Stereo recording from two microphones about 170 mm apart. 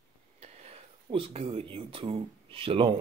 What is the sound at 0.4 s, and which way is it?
Speech, 35° right (ahead or behind).